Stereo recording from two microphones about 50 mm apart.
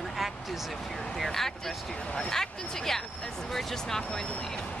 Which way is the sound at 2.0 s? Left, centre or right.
Left.